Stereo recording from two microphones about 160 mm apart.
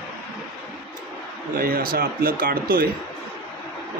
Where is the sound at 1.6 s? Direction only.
65° right (ahead or behind).